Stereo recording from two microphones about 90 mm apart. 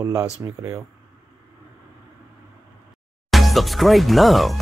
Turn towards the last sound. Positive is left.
turn(degrees=0)  # may be behind; listen again after turning